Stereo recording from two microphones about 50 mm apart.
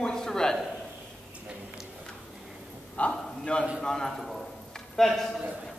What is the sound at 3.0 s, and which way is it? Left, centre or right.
Speech, left.